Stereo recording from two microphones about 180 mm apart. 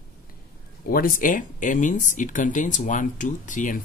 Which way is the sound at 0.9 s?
50° left (ahead or behind).